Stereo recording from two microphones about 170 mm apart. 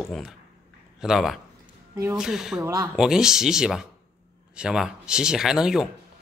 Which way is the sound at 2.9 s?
5° right (ahead or behind).